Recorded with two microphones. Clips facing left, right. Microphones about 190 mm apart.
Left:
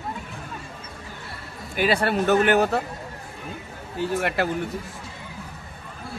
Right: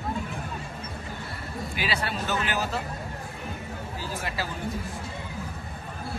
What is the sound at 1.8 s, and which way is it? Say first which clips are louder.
Speech: left 10 dB; 50° left (ahead or behind).